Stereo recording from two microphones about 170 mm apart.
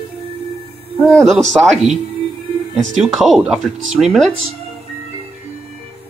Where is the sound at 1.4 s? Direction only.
40° right (ahead or behind).